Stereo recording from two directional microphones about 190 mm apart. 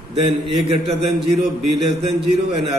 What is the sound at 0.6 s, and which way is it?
Speech, 30° right (ahead or behind).